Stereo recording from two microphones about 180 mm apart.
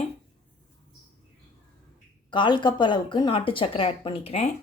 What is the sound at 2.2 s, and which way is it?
Speech, 25° left (ahead or behind).